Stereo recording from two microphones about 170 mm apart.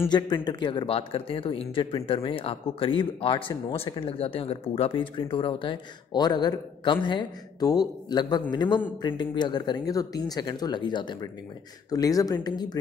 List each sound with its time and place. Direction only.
0.1 s speech: 25° left (ahead or behind)